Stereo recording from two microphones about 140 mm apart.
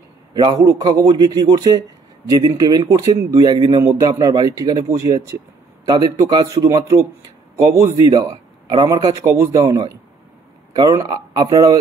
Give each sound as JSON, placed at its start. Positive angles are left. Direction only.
{"t": 0.3, "sound": "a man's voice", "side_deg": -30}